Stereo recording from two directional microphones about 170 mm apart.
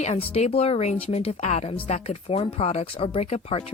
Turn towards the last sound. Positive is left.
turn(degrees=35)  # may be behind; listen again after turning